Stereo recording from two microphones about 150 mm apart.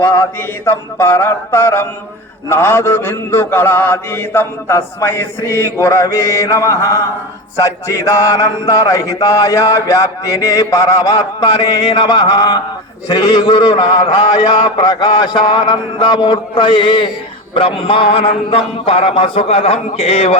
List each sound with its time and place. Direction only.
0.0 s mantra: 15° left (ahead or behind); by 20.3 s 45° left (ahead or behind)